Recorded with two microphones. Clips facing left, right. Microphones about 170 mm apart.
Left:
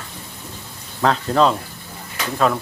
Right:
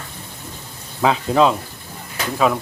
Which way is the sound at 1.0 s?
5° right (ahead or behind).